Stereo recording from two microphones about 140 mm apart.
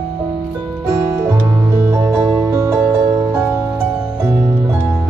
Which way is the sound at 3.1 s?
15° right (ahead or behind).